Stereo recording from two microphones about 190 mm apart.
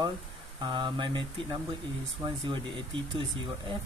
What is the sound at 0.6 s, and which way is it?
Speech, 25° right (ahead or behind).